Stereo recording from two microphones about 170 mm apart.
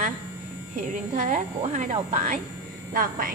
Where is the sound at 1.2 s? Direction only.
50° right (ahead or behind).